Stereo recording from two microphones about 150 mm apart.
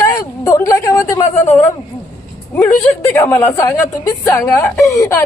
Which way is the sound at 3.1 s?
15° left (ahead or behind).